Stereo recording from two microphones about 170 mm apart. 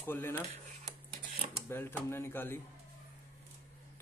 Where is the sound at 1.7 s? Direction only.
15° left (ahead or behind).